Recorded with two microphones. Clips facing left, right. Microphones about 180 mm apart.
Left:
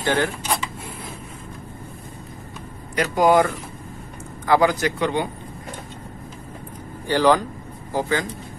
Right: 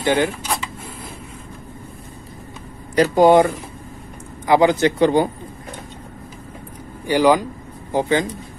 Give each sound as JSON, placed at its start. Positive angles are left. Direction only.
{"t": 0.0, "sound": "speech", "side_deg": -15}
{"t": 3.0, "sound": "speech", "side_deg": -25}
{"t": 7.1, "sound": "speech", "side_deg": -15}